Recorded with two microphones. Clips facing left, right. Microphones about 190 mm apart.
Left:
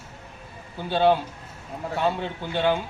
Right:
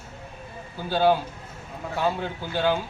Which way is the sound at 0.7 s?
Centre (ahead or behind).